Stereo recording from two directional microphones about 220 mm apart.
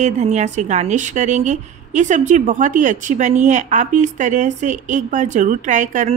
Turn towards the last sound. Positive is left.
turn(degrees=-35)  # may be behind; listen again after turning